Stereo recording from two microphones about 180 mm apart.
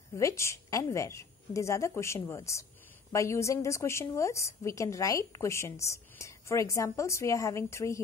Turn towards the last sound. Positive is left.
turn(degrees=15)  # may be behind; listen again after turning